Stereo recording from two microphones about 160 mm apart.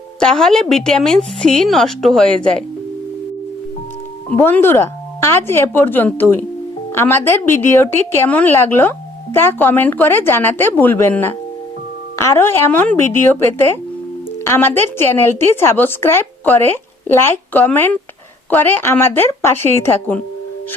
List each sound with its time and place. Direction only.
0.2 s a woman's voice: 5° left (ahead or behind)
4.4 s a woman's voice: 15° left (ahead or behind)